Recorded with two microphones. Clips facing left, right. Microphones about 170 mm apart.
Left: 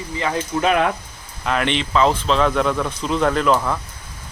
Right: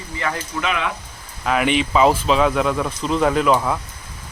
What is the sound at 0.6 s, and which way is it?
Speech, 45° left (ahead or behind).